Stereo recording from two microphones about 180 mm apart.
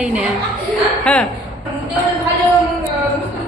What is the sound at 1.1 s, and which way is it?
Speech, 5° left (ahead or behind).